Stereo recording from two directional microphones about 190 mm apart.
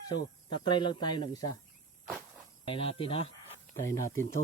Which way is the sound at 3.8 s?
15° left (ahead or behind).